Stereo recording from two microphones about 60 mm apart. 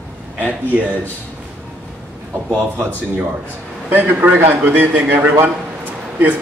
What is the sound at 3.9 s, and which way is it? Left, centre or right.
A man's voice, right.